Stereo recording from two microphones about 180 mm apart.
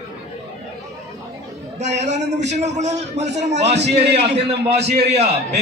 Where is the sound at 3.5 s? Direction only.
70° right (ahead or behind).